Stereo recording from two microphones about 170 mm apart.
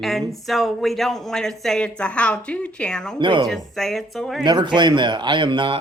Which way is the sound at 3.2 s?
30° right (ahead or behind).